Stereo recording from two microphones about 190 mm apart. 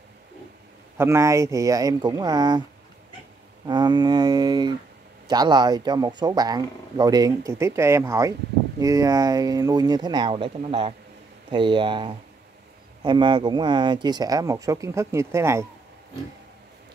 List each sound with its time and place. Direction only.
0.9 s speech: 15° right (ahead or behind)
3.6 s speech: 25° right (ahead or behind)